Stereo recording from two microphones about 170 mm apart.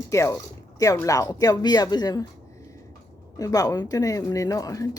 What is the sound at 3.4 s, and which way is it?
Speech, 20° left (ahead or behind).